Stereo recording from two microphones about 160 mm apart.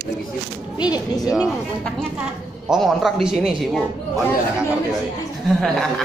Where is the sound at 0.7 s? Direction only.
25° left (ahead or behind).